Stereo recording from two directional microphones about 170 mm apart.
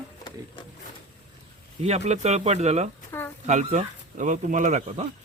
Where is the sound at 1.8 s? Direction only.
40° right (ahead or behind).